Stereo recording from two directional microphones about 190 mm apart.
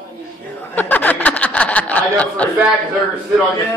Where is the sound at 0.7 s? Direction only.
10° left (ahead or behind).